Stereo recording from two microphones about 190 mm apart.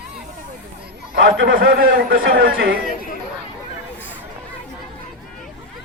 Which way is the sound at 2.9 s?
45° left (ahead or behind).